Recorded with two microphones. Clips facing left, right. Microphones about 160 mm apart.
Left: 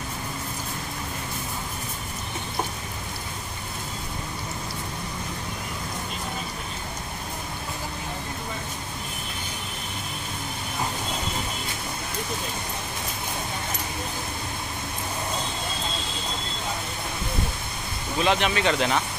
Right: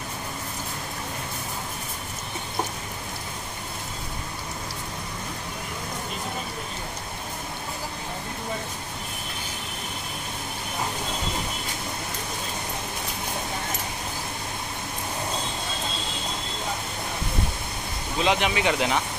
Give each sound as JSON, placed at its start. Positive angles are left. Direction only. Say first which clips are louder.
{"t": 18.2, "sound": "speech", "louder": "even", "side_deg": -15}